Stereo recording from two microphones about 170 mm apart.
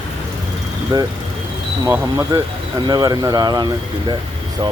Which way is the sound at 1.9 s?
20° right (ahead or behind).